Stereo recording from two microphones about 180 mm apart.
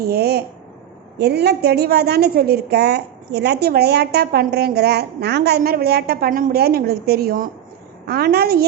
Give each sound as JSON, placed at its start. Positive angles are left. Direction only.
{"t": 0.0, "sound": "a woman's voice", "side_deg": -60}